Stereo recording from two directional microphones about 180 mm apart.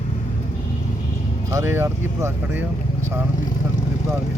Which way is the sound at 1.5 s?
15° right (ahead or behind).